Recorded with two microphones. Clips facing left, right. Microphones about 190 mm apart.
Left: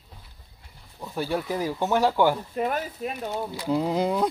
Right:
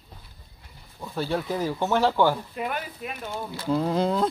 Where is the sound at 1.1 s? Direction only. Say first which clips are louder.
Even; 10° left (ahead or behind).